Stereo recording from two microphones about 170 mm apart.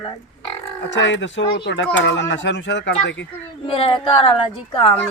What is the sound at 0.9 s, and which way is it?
Speech, 90° left.